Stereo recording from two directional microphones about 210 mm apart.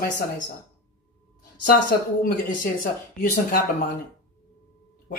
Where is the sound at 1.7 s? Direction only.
45° left (ahead or behind).